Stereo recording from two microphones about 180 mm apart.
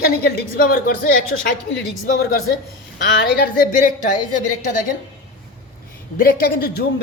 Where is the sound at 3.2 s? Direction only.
60° left (ahead or behind).